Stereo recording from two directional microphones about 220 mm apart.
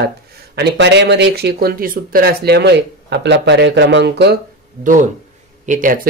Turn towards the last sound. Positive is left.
turn(degrees=-40)  # may be behind; listen again after turning